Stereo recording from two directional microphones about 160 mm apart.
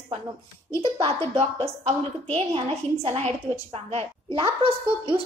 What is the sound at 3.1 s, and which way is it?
A woman's voice, 40° right (ahead or behind).